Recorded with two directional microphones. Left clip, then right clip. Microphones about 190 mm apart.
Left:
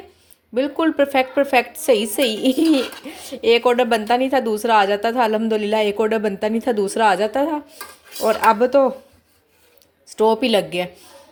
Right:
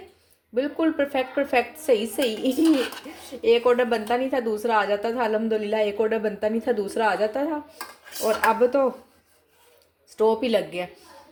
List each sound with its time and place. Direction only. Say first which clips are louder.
0.5 s a woman's voice: left 5 dB; 40° left (ahead or behind)
10.1 s a woman's voice: left 5 dB; 40° left (ahead or behind)